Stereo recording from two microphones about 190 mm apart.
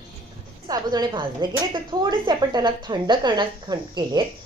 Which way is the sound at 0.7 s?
20° right (ahead or behind).